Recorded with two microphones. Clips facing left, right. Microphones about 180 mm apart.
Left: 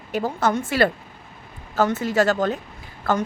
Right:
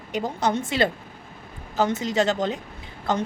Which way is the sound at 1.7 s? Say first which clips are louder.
Left 2 dB; 20° right (ahead or behind).